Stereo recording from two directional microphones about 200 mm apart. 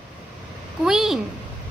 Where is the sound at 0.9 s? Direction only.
Centre (ahead or behind).